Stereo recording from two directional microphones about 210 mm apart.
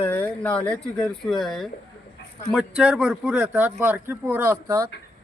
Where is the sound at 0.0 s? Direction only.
10° left (ahead or behind).